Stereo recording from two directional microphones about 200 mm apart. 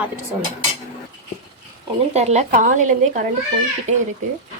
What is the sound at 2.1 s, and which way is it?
A woman's voice, 35° right (ahead or behind).